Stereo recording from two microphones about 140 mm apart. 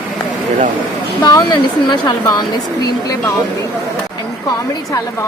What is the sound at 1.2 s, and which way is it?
Speech, 30° left (ahead or behind).